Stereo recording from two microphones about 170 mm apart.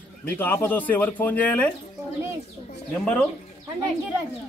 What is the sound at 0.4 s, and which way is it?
Speech, 10° left (ahead or behind).